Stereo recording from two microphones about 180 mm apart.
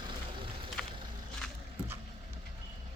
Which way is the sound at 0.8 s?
5° left (ahead or behind).